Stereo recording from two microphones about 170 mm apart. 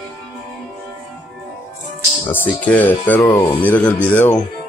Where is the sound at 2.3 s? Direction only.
10° left (ahead or behind).